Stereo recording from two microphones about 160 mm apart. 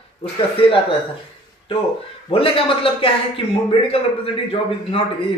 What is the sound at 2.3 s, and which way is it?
A man's voice, 35° left (ahead or behind).